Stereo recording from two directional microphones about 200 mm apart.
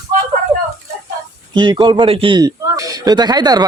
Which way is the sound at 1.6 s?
25° right (ahead or behind).